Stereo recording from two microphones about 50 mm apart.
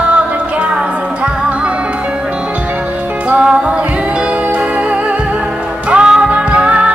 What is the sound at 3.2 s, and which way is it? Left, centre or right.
Music, right.